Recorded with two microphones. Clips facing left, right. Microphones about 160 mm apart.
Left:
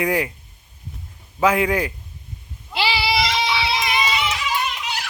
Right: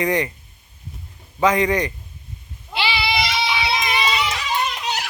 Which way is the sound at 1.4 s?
5° left (ahead or behind).